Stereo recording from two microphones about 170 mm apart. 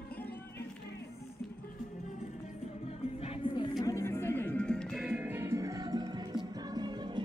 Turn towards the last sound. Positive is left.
turn(degrees=-25)  # may be behind; listen again after turning